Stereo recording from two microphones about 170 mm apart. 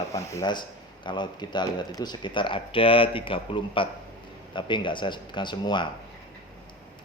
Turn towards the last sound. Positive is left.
turn(degrees=25)  # may be behind; listen again after turning